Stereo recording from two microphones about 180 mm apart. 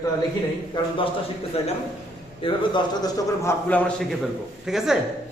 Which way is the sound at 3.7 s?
5° left (ahead or behind).